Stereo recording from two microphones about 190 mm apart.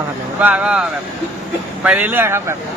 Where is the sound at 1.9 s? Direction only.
10° right (ahead or behind).